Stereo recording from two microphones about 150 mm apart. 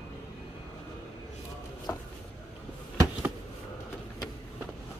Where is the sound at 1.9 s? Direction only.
15° left (ahead or behind).